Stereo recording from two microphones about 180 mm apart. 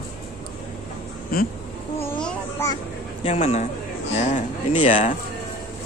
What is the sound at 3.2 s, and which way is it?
Speech, 35° left (ahead or behind).